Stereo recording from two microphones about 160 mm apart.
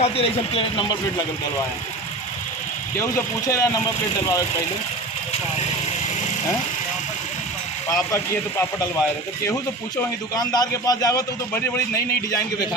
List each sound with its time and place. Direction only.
0.0 s speech: 40° left (ahead or behind)
3.0 s a man's voice: 20° left (ahead or behind)
7.9 s a man's voice: 20° left (ahead or behind)
10.3 s a man's voice: 25° left (ahead or behind)